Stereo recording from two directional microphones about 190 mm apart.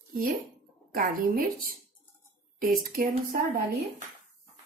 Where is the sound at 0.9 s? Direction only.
50° right (ahead or behind).